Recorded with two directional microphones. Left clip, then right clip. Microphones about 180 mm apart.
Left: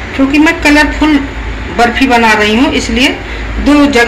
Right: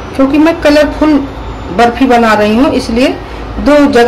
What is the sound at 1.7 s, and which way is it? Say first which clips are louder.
A woman's voice: right 1 dB; 35° right (ahead or behind).